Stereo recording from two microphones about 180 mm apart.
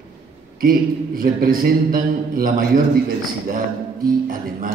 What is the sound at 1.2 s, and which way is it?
A man's voice, 55° right (ahead or behind).